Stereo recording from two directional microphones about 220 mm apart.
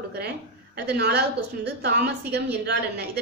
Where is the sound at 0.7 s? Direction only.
50° right (ahead or behind).